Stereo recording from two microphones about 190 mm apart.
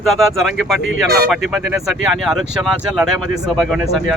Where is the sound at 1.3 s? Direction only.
5° right (ahead or behind).